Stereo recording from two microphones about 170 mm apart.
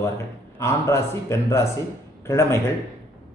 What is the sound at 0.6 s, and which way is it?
A man's voice, 15° left (ahead or behind).